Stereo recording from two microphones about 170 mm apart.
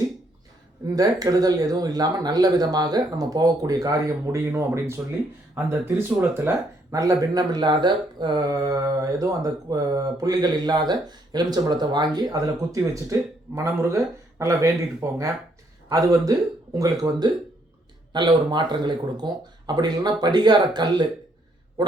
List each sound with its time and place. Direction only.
0.9 s speech: 20° right (ahead or behind)